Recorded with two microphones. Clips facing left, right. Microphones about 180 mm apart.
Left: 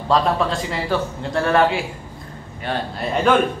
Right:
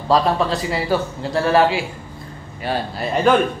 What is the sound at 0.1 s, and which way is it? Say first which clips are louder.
A man's voice: right 1 dB; 5° right (ahead or behind).